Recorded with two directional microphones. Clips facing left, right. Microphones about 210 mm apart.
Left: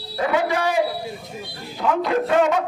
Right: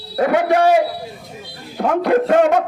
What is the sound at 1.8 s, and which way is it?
Speech, 50° right (ahead or behind).